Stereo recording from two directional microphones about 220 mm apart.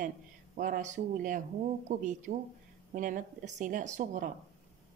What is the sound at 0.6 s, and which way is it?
Speech, 35° right (ahead or behind).